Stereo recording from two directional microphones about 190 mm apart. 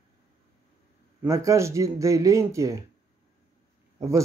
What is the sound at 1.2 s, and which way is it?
Speech, 15° right (ahead or behind).